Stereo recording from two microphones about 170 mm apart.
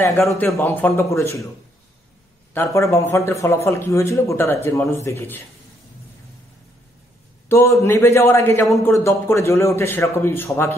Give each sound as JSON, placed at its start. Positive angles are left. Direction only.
{"t": 0.3, "sound": "a man's voice", "side_deg": 0}
{"t": 0.6, "sound": "a man's voice", "side_deg": 10}
{"t": 2.5, "sound": "a man's voice", "side_deg": 15}
{"t": 7.4, "sound": "a man's voice", "side_deg": 15}